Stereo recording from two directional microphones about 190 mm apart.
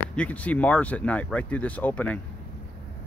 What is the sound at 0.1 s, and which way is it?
Speech, 5° left (ahead or behind).